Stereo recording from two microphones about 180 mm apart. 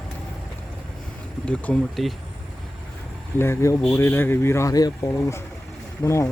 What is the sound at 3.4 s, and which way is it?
Speech, 15° left (ahead or behind).